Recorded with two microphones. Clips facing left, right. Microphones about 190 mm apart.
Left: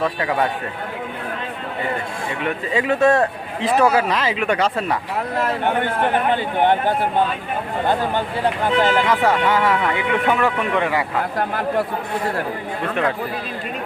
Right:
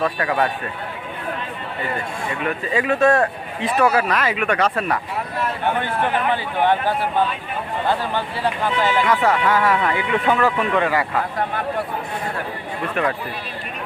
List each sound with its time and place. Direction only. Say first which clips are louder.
0.2 s speech: even; 20° left (ahead or behind)
2.4 s speech: left 1 dB; 25° left (ahead or behind)
6.3 s speech: left 2 dB; 20° left (ahead or behind)
8.6 s speech: left 2 dB; 20° left (ahead or behind)